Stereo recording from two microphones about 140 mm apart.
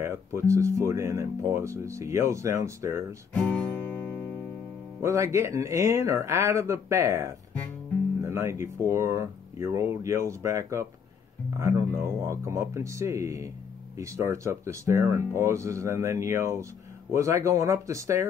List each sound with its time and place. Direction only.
0.0 s speech: 20° right (ahead or behind)
3.3 s guitar: 10° left (ahead or behind)
5.0 s speech: 20° right (ahead or behind)